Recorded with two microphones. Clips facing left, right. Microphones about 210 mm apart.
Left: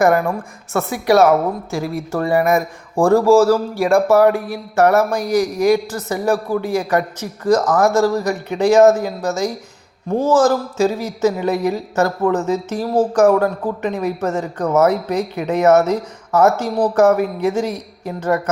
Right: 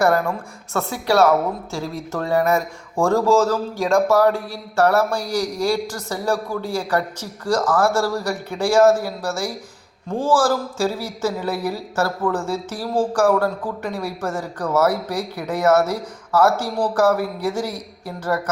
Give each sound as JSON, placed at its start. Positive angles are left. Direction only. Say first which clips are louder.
{"t": 0.0, "sound": "speech", "louder": "left 3 dB", "side_deg": 15}